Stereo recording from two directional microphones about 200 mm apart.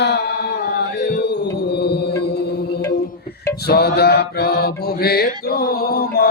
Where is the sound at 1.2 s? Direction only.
55° left (ahead or behind).